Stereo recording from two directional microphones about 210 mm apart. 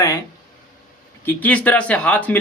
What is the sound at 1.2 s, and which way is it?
Speech, 5° left (ahead or behind).